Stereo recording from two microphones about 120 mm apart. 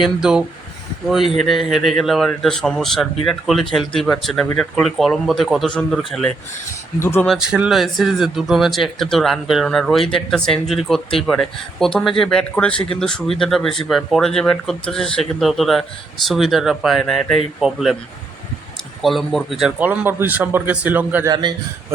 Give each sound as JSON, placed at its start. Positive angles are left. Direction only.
{"t": 0.0, "sound": "speech", "side_deg": -5}
{"t": 7.0, "sound": "speech", "side_deg": 20}
{"t": 7.3, "sound": "speech", "side_deg": -5}
{"t": 19.0, "sound": "speech", "side_deg": 0}
{"t": 19.8, "sound": "a man's voice", "side_deg": -15}
{"t": 21.2, "sound": "a man's voice", "side_deg": -40}